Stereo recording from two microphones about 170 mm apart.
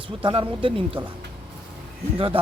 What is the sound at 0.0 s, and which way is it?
Speech, 30° right (ahead or behind).